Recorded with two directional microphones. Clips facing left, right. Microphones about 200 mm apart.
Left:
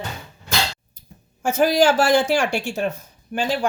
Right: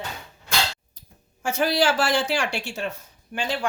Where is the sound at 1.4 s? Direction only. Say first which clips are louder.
Left 5 dB; 45° left (ahead or behind).